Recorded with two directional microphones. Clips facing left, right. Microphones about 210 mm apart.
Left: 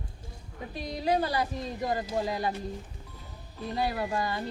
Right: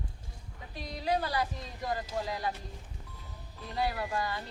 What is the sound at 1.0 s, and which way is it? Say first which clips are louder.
Speech: left 3 dB; 20° left (ahead or behind).